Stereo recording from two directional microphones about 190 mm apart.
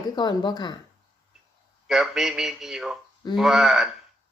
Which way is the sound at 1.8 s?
Centre (ahead or behind).